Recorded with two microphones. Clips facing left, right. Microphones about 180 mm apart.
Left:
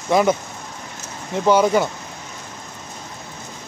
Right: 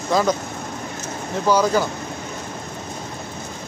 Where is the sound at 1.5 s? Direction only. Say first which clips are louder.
Left 2 dB; 25° left (ahead or behind).